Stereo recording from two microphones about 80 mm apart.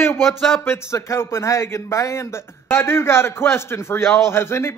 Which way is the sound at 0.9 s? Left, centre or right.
Left.